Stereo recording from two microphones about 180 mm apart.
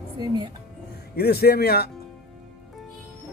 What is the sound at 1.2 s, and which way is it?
Speech, 65° left (ahead or behind).